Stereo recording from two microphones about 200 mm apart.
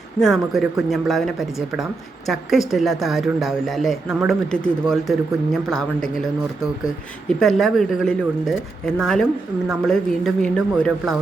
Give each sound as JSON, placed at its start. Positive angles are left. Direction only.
{"t": 0.2, "sound": "speech", "side_deg": 0}
{"t": 7.3, "sound": "speech", "side_deg": 0}